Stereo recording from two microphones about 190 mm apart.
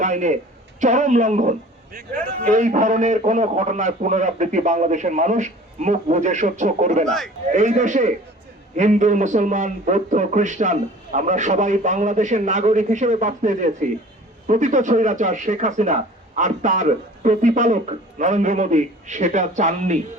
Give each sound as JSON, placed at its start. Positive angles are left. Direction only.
{"t": 0.0, "sound": "a man's voice", "side_deg": -40}